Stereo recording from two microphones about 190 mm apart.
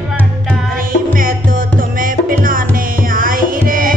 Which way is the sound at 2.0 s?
45° right (ahead or behind).